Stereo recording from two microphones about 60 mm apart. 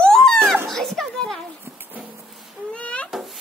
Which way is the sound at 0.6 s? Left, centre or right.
Centre.